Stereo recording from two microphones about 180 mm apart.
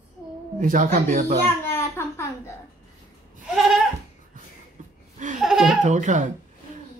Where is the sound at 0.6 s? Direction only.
50° right (ahead or behind).